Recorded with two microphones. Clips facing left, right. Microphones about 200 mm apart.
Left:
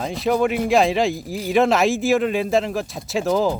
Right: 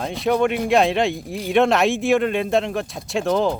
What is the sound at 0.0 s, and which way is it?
Speech, centre (ahead or behind).